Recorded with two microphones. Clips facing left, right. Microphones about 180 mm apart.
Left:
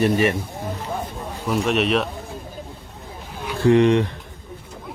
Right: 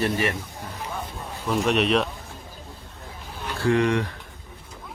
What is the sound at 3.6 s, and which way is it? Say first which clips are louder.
Speech: left 6 dB; 20° left (ahead or behind).